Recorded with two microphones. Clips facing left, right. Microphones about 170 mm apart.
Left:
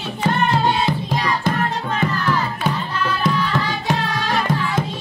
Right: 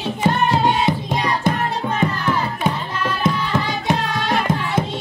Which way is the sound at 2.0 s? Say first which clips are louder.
Even; 20° right (ahead or behind).